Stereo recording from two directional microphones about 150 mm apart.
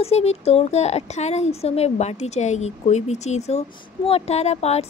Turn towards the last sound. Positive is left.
turn(degrees=45)  # may be behind; listen again after turning